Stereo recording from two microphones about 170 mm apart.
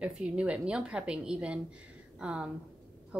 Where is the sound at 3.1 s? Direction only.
5° right (ahead or behind).